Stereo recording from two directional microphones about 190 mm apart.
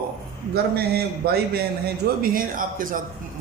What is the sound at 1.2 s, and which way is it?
A man's voice, 55° right (ahead or behind).